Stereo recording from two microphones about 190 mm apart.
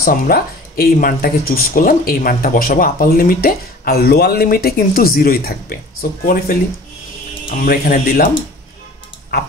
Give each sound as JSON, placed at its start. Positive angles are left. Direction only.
{"t": 0.0, "sound": "speech", "side_deg": 50}